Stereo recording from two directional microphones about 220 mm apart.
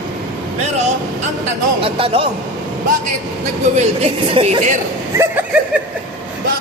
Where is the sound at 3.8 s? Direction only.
30° right (ahead or behind).